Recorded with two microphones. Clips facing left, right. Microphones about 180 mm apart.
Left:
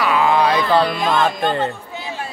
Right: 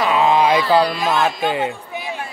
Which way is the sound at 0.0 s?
25° right (ahead or behind).